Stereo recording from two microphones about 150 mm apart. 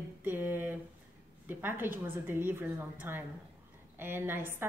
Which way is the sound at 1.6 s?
15° right (ahead or behind).